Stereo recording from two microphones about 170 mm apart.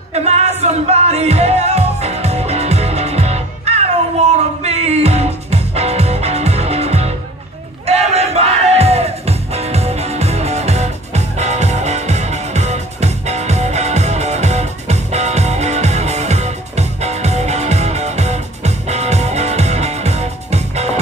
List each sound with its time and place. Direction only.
0.1 s music: 40° right (ahead or behind)